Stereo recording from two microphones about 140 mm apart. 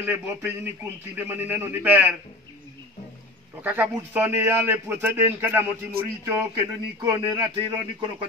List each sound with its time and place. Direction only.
0.0 s a man's voice: 15° right (ahead or behind)
3.6 s a man's voice: 10° right (ahead or behind); by 8.3 s 35° right (ahead or behind)